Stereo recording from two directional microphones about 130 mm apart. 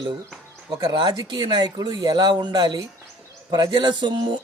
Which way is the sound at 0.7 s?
30° right (ahead or behind).